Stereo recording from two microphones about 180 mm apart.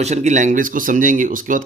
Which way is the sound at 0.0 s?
40° right (ahead or behind).